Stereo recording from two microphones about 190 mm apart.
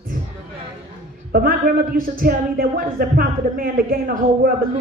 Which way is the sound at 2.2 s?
50° right (ahead or behind).